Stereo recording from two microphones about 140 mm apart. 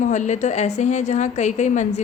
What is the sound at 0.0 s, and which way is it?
A woman's voice, 60° left (ahead or behind).